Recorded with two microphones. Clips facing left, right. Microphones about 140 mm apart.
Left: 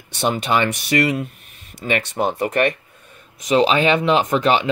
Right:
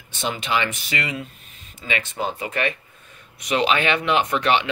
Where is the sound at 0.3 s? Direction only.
45° left (ahead or behind).